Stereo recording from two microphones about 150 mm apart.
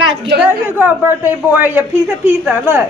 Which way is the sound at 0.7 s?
10° right (ahead or behind).